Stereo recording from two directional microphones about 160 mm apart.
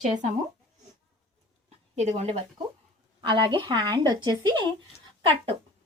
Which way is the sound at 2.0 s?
40° right (ahead or behind).